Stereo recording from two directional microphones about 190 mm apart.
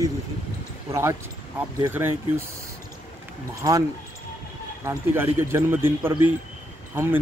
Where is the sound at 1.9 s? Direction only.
10° right (ahead or behind).